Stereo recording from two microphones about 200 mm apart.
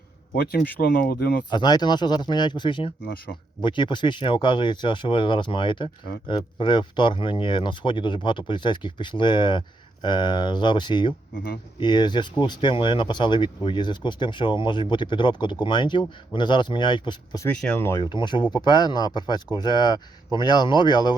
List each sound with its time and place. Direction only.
0.8 s speech: 45° left (ahead or behind)
1.5 s speech: 20° left (ahead or behind)
17.5 s speech: 5° left (ahead or behind)
18.0 s speech: 25° left (ahead or behind)